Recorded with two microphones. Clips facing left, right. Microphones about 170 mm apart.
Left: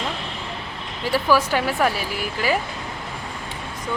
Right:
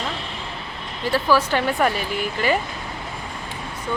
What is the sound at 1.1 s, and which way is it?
Speech, 10° left (ahead or behind).